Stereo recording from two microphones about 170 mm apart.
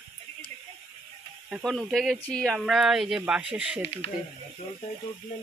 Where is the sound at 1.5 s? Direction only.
Centre (ahead or behind).